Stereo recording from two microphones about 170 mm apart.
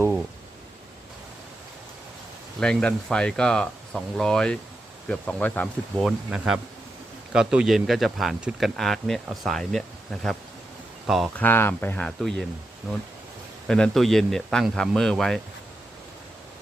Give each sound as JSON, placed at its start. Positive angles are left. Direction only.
{"t": 2.6, "sound": "speech", "side_deg": 5}
{"t": 6.1, "sound": "speech", "side_deg": -5}
{"t": 11.3, "sound": "speech", "side_deg": 10}
{"t": 13.7, "sound": "speech", "side_deg": 5}